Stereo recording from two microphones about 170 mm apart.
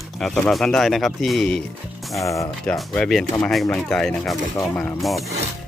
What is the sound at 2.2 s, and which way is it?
Speech, 20° left (ahead or behind).